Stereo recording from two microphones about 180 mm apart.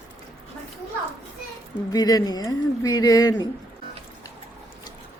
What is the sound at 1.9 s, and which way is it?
A man's voice, 20° left (ahead or behind).